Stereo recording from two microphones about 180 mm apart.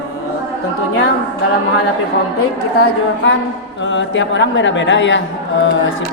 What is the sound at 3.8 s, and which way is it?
Speech, 90° left.